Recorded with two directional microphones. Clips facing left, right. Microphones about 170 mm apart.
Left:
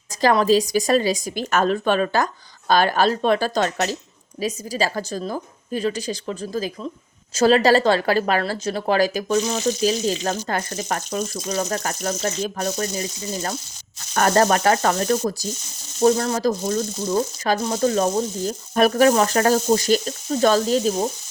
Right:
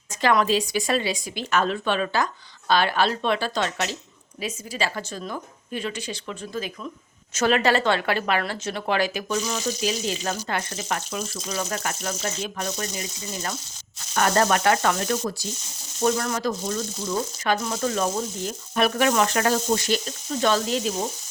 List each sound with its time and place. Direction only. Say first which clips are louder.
0.2 s speech: left 4 dB; 40° left (ahead or behind)